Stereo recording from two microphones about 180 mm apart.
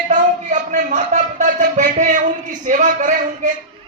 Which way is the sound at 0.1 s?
45° right (ahead or behind).